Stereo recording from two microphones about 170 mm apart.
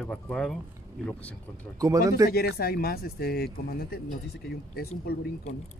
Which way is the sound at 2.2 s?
65° left (ahead or behind).